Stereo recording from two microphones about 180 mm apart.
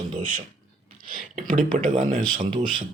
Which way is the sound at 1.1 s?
50° right (ahead or behind).